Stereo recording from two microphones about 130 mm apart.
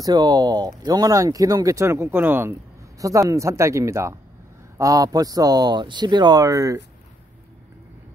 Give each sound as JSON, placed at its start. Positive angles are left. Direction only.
{"t": 0.0, "sound": "speech", "side_deg": -30}
{"t": 3.0, "sound": "speech", "side_deg": -25}